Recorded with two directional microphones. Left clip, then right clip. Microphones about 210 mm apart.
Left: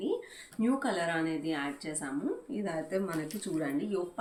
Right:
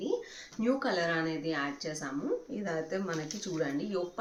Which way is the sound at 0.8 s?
15° right (ahead or behind).